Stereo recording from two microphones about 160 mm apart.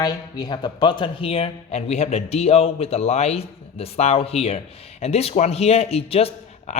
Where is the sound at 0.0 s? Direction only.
25° left (ahead or behind).